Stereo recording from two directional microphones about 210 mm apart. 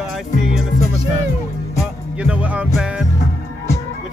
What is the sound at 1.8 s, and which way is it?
Music, 5° right (ahead or behind).